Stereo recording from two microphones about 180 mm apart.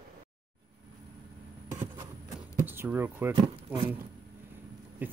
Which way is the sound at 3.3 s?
25° right (ahead or behind).